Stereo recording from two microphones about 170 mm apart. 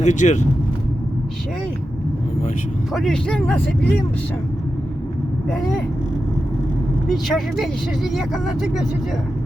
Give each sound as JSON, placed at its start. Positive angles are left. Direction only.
{"t": 0.0, "sound": "speech", "side_deg": 45}
{"t": 2.9, "sound": "speech", "side_deg": 0}
{"t": 5.5, "sound": "speech", "side_deg": 5}
{"t": 7.1, "sound": "speech", "side_deg": 0}